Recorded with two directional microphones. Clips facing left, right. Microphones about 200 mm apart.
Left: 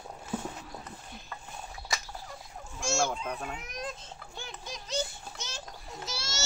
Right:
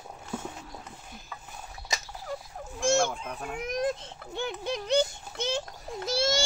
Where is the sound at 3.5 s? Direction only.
60° right (ahead or behind).